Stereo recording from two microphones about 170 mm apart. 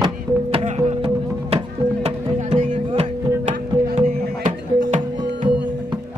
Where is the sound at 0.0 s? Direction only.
35° right (ahead or behind).